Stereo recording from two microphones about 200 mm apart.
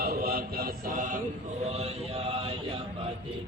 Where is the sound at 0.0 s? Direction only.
50° right (ahead or behind).